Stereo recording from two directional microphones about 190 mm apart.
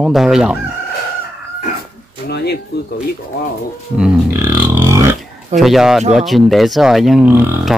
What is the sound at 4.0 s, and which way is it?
Speech, 10° right (ahead or behind).